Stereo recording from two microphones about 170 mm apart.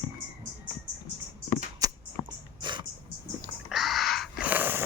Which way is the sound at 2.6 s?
25° right (ahead or behind).